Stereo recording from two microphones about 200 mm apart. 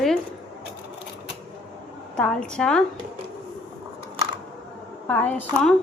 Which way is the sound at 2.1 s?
5° left (ahead or behind).